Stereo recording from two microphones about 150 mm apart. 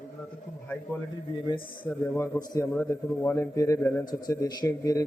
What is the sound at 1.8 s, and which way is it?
A man's voice, 15° left (ahead or behind).